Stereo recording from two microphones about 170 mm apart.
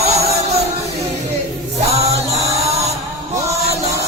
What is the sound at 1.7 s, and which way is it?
Music, 40° right (ahead or behind).